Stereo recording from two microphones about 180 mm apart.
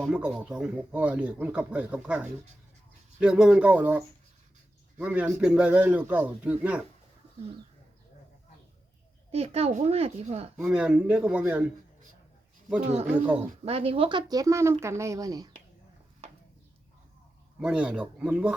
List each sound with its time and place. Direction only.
0.1 s speech: 5° right (ahead or behind)
9.3 s speech: 35° right (ahead or behind)
10.6 s speech: 5° right (ahead or behind)
13.1 s speech: 10° right (ahead or behind)
13.7 s speech: 30° right (ahead or behind)
17.6 s speech: 5° right (ahead or behind)